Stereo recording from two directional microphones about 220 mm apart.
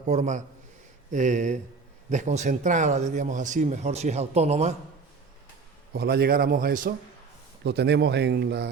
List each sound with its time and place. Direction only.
0.0 s speech: 35° right (ahead or behind)
5.9 s speech: 45° right (ahead or behind)